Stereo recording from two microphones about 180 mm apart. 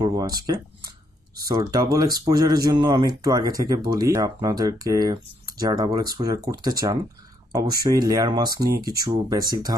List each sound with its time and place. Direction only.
0.0 s speech: 20° right (ahead or behind)